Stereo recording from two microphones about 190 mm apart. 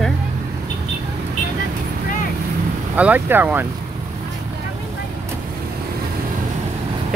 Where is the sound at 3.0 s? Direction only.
10° right (ahead or behind).